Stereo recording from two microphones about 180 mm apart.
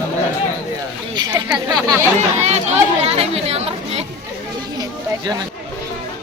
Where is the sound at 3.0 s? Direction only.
35° right (ahead or behind).